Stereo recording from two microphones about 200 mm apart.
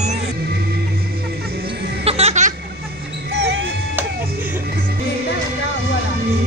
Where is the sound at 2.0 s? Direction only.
30° right (ahead or behind).